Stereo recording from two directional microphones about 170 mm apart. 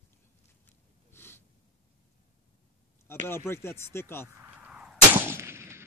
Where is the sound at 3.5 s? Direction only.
15° left (ahead or behind).